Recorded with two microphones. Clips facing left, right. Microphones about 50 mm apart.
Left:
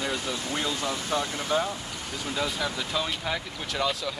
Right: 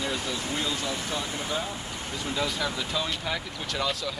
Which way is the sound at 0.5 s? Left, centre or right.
Left.